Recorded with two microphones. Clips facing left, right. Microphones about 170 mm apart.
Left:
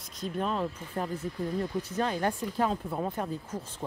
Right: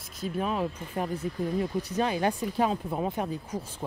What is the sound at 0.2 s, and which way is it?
Speech, 10° right (ahead or behind).